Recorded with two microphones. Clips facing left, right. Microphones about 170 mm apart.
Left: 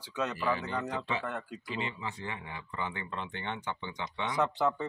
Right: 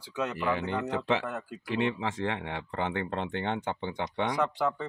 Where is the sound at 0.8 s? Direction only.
70° right (ahead or behind).